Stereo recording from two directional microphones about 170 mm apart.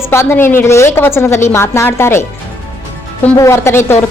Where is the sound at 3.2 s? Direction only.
15° left (ahead or behind).